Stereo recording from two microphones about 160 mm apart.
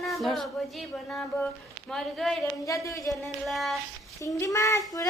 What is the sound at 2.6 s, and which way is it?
Speech, 20° left (ahead or behind).